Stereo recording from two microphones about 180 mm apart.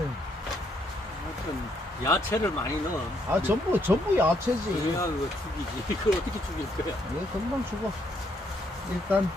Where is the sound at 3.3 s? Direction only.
10° right (ahead or behind).